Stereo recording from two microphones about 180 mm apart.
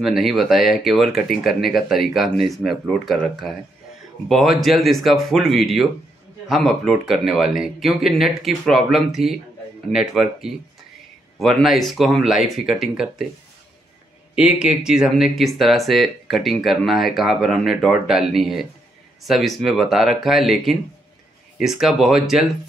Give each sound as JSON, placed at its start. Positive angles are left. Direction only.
{"t": 0.0, "sound": "speech", "side_deg": 0}
{"t": 14.3, "sound": "speech", "side_deg": -5}